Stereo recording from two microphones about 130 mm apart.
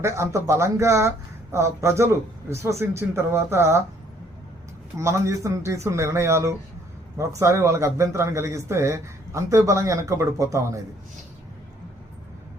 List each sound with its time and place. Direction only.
0.0 s a man's voice: 25° right (ahead or behind)
4.9 s a man's voice: 25° right (ahead or behind)